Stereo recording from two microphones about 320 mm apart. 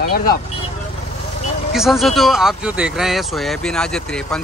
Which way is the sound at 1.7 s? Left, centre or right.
Centre.